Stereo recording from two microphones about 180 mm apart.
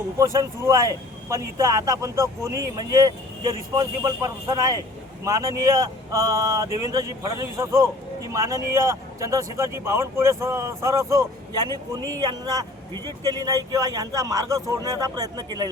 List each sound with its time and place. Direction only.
0.2 s a man's voice: 15° right (ahead or behind)